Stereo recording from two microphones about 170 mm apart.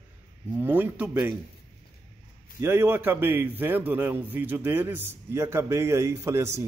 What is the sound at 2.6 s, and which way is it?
A man's voice, 15° right (ahead or behind).